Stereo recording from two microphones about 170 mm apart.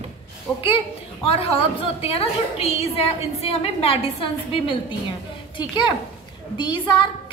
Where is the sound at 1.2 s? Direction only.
35° left (ahead or behind).